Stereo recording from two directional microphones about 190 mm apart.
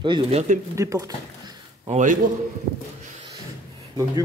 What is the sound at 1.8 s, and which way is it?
Speech, 40° right (ahead or behind).